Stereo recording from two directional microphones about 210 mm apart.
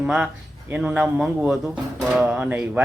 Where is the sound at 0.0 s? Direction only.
5° right (ahead or behind).